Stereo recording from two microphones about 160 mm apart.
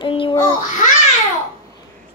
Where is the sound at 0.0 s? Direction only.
30° left (ahead or behind).